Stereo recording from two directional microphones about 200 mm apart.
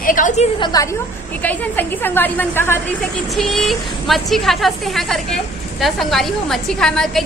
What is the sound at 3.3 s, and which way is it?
A woman's voice, centre (ahead or behind).